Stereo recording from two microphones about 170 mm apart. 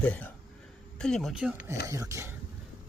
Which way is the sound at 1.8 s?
20° right (ahead or behind).